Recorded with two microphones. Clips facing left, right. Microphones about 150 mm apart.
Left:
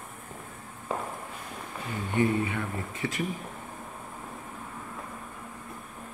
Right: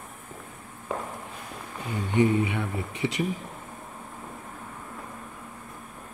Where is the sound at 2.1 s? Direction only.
15° right (ahead or behind).